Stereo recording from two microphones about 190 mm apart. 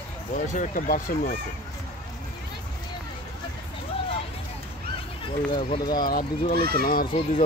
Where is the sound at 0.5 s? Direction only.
45° left (ahead or behind).